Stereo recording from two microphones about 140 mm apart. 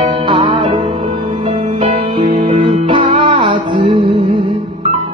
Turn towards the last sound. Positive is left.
turn(degrees=-40)  # may be behind; listen again after turning